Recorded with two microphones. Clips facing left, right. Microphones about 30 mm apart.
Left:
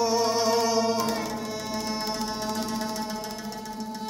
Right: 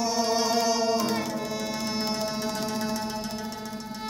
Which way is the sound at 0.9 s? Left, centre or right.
Centre.